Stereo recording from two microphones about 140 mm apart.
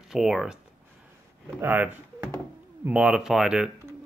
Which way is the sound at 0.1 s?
Centre (ahead or behind).